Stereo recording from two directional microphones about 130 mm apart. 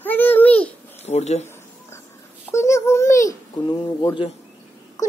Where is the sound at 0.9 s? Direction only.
55° left (ahead or behind).